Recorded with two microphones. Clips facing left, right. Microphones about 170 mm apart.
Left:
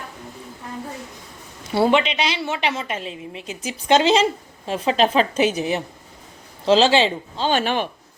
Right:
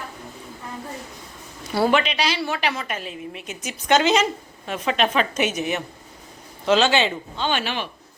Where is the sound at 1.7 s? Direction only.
25° left (ahead or behind).